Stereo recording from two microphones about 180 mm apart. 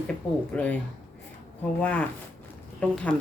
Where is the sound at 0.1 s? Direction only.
5° left (ahead or behind).